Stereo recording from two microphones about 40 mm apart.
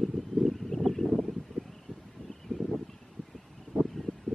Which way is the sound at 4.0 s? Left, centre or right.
Centre.